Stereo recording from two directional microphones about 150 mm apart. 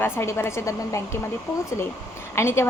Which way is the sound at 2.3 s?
15° left (ahead or behind).